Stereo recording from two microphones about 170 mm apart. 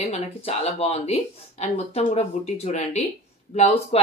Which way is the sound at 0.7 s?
35° left (ahead or behind).